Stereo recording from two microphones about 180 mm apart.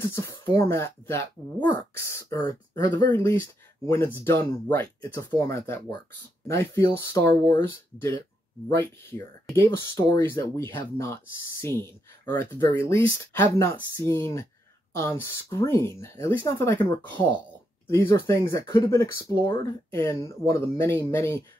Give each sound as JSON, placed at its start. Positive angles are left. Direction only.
{"t": 0.0, "sound": "speech", "side_deg": 15}
{"t": 8.6, "sound": "speech", "side_deg": 15}
{"t": 12.3, "sound": "speech", "side_deg": 15}